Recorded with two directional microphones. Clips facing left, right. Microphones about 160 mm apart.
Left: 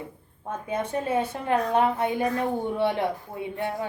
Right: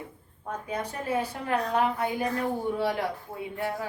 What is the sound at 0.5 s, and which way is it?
A woman's voice, 25° left (ahead or behind).